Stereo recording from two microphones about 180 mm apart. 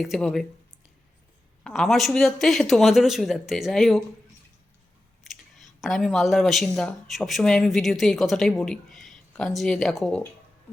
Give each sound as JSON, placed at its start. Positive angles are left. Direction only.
{"t": 0.0, "sound": "speech", "side_deg": 0}
{"t": 1.6, "sound": "speech", "side_deg": 0}
{"t": 5.2, "sound": "speech", "side_deg": 0}